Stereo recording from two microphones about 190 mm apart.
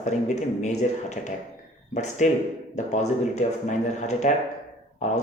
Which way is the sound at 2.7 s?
40° left (ahead or behind).